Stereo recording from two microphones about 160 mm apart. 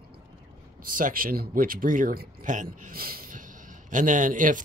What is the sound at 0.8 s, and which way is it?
Speech, 60° right (ahead or behind).